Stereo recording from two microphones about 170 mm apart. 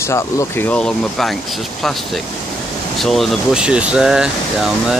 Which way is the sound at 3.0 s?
Centre (ahead or behind).